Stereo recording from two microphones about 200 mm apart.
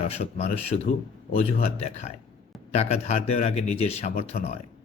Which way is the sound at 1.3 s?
30° left (ahead or behind).